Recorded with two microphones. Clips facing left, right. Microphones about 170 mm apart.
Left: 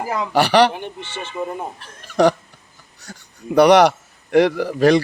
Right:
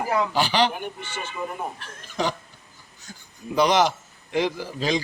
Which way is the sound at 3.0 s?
70° left (ahead or behind).